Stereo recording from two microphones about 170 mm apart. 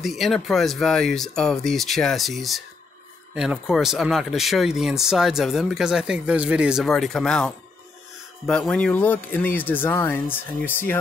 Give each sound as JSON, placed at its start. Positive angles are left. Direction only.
{"t": 0.0, "sound": "speech", "side_deg": 0}